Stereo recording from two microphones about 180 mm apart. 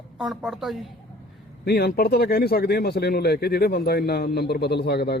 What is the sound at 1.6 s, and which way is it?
Speech, 60° left (ahead or behind).